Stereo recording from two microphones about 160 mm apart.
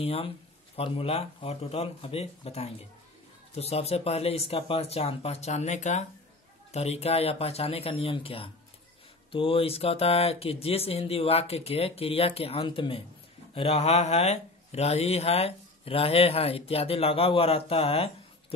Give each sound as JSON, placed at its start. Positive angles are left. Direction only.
{"t": 0.0, "sound": "speech", "side_deg": 40}